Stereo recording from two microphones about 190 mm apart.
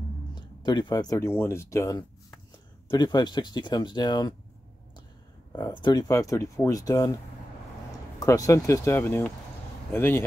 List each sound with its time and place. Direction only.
0.3 s speech: 25° left (ahead or behind)
5.5 s speech: 20° left (ahead or behind)
8.2 s speech: 15° left (ahead or behind)